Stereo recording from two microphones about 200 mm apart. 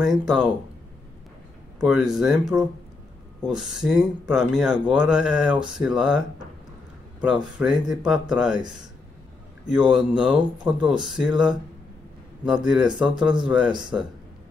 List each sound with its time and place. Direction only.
0.0 s speech: centre (ahead or behind)
1.8 s speech: centre (ahead or behind)
7.5 s speech: 5° right (ahead or behind)
9.9 s speech: 5° right (ahead or behind)
13.7 s speech: 20° right (ahead or behind)